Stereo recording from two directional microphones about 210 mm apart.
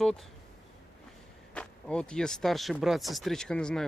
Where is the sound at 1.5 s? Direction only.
5° left (ahead or behind).